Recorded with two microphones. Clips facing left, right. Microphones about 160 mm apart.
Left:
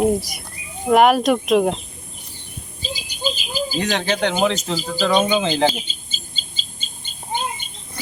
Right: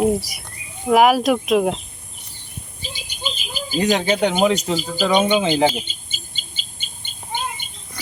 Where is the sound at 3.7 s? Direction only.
10° right (ahead or behind).